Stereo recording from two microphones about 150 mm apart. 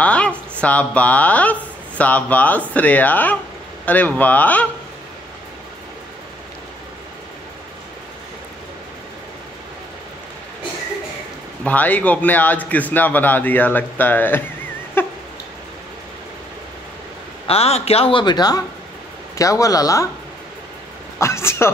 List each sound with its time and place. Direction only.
0.0 s a man's voice: 10° left (ahead or behind)
11.6 s a man's voice: 10° left (ahead or behind)
15.0 s dog: 15° left (ahead or behind)
17.5 s a man's voice: 40° left (ahead or behind); by 20.1 s 20° left (ahead or behind)
21.2 s a man's voice: 15° left (ahead or behind)